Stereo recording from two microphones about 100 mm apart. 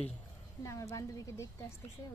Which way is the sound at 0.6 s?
30° left (ahead or behind).